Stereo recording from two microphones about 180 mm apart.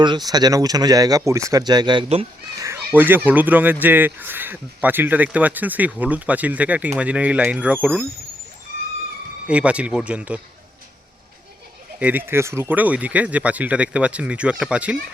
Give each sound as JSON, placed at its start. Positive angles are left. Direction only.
{"t": 0.3, "sound": "speech", "side_deg": -20}
{"t": 2.6, "sound": "speech", "side_deg": -15}
{"t": 9.5, "sound": "speech", "side_deg": -5}
{"t": 11.9, "sound": "speech", "side_deg": -10}